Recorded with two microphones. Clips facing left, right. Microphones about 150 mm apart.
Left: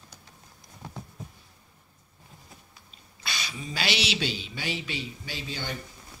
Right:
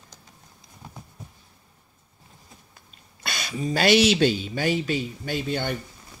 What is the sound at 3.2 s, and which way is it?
Speech, 50° right (ahead or behind).